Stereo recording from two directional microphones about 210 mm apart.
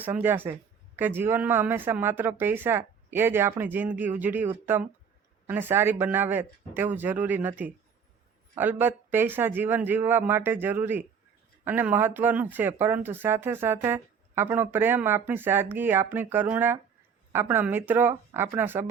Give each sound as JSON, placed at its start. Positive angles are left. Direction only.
{"t": 0.0, "sound": "speech", "side_deg": -10}